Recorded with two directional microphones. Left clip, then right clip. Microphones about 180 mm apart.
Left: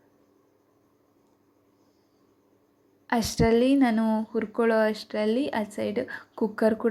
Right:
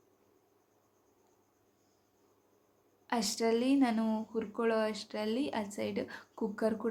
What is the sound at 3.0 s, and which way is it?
A woman's voice, 25° left (ahead or behind).